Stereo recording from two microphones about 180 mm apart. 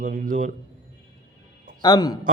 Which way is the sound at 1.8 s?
20° left (ahead or behind).